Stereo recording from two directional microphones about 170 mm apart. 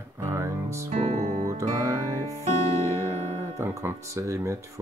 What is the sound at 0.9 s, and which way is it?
Music, 40° right (ahead or behind).